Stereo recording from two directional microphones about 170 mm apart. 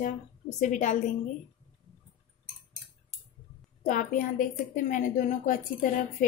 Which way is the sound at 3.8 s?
50° left (ahead or behind).